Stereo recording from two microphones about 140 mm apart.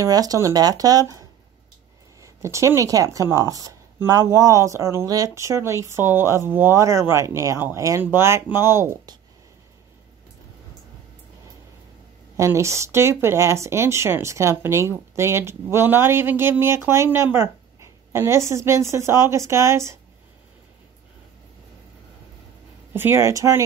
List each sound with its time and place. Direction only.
0.0 s speech: 25° right (ahead or behind)
2.2 s speech: 20° right (ahead or behind)
12.4 s speech: 20° right (ahead or behind)
22.9 s speech: 15° right (ahead or behind)